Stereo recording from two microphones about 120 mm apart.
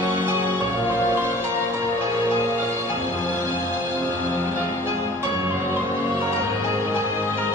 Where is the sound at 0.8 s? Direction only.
20° right (ahead or behind).